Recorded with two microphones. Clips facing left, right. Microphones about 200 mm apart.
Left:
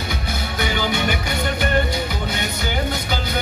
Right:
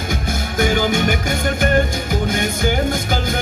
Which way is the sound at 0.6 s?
45° right (ahead or behind).